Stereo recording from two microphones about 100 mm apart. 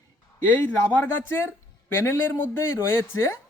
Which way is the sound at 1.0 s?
25° left (ahead or behind).